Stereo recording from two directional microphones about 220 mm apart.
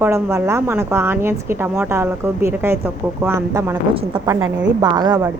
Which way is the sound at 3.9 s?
25° right (ahead or behind).